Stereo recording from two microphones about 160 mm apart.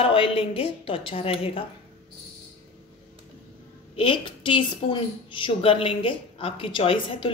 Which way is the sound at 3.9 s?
35° left (ahead or behind).